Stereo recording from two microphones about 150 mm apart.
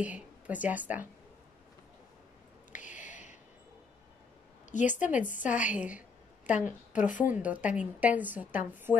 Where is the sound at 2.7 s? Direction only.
55° left (ahead or behind).